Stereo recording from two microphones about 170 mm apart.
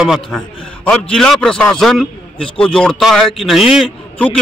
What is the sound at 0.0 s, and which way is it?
A man's voice, centre (ahead or behind).